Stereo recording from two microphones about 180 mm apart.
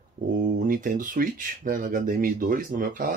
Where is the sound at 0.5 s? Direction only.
50° right (ahead or behind).